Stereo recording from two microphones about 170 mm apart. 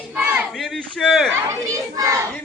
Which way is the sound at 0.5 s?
Centre (ahead or behind).